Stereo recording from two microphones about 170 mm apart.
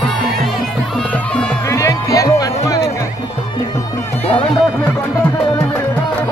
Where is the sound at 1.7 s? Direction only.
20° left (ahead or behind).